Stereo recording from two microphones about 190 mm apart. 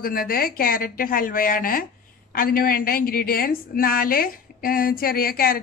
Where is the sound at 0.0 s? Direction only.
50° left (ahead or behind).